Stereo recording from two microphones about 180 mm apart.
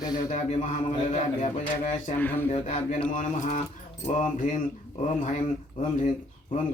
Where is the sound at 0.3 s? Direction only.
40° left (ahead or behind).